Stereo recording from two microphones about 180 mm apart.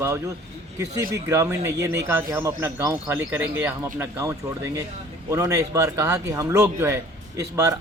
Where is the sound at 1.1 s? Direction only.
15° right (ahead or behind).